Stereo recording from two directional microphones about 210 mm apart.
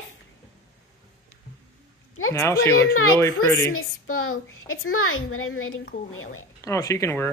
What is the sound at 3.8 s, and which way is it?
A woman's voice, 80° left.